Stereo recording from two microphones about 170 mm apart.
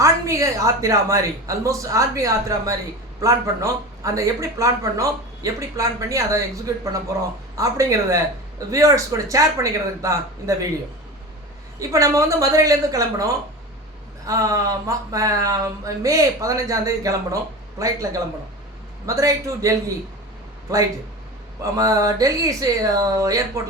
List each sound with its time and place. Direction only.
0.0 s speech: 20° right (ahead or behind)
7.5 s speech: 20° right (ahead or behind)
11.8 s speech: 20° right (ahead or behind)
21.6 s speech: 20° right (ahead or behind)